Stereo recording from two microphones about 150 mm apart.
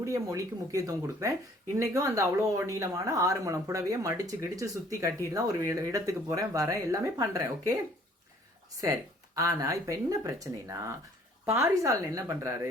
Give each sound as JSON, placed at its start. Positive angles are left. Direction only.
{"t": 0.0, "sound": "speech", "side_deg": -20}
{"t": 8.8, "sound": "speech", "side_deg": -20}